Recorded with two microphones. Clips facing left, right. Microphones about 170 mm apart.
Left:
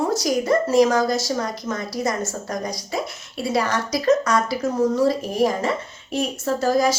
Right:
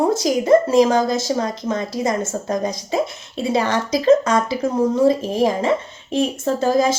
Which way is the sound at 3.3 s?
25° right (ahead or behind).